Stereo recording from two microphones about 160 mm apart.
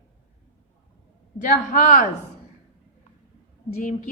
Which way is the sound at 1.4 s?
55° left (ahead or behind).